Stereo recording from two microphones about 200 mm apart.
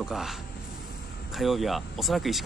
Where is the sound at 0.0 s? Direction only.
Centre (ahead or behind).